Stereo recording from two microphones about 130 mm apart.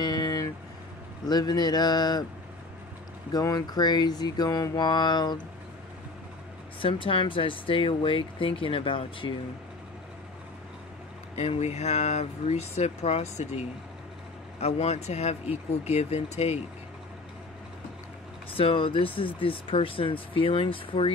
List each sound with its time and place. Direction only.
0.0 s vehicle: 30° left (ahead or behind)
1.2 s speech: 30° left (ahead or behind)
3.3 s speech: 30° left (ahead or behind)
6.8 s speech: 45° left (ahead or behind)
11.3 s speech: 55° left (ahead or behind)
18.5 s speech: 45° left (ahead or behind)